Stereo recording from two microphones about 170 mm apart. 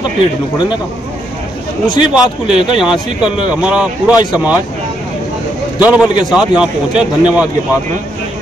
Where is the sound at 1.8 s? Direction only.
25° left (ahead or behind).